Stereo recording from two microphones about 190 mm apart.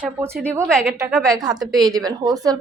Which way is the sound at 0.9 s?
15° right (ahead or behind).